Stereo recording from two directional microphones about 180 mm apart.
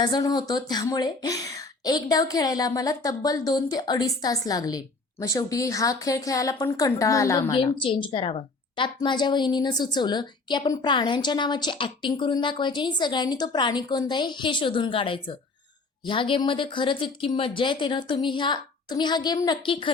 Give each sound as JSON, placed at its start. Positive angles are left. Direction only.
{"t": 0.0, "sound": "a woman's voice", "side_deg": 25}
{"t": 7.5, "sound": "a woman's voice", "side_deg": 30}